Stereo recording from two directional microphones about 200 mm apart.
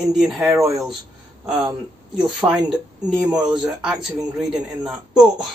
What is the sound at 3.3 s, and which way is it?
Speech, 20° right (ahead or behind).